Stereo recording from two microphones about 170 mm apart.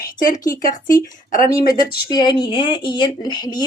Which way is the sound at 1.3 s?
55° left (ahead or behind).